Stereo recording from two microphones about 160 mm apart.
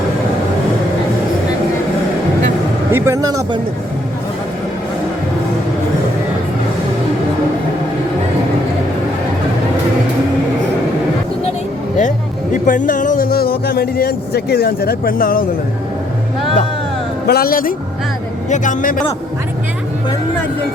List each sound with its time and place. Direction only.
2.9 s speech: 20° right (ahead or behind)
11.9 s music: 50° left (ahead or behind)
17.2 s a man's voice: 70° left (ahead or behind)
18.5 s a man's voice: 50° left (ahead or behind)